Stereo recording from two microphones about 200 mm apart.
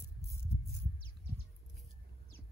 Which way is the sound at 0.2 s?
15° left (ahead or behind).